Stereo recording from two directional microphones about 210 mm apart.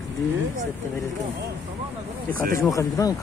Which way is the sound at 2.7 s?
15° left (ahead or behind).